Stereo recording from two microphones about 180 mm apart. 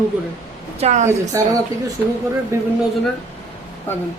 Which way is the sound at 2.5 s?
15° right (ahead or behind).